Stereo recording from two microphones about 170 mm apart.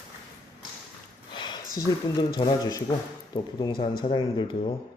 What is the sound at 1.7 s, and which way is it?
A man's voice, 25° left (ahead or behind).